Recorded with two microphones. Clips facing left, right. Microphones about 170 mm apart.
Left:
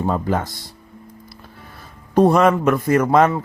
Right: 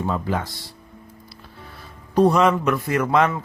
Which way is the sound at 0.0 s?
45° left (ahead or behind).